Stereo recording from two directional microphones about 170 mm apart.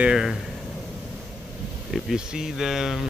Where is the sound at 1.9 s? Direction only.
5° right (ahead or behind).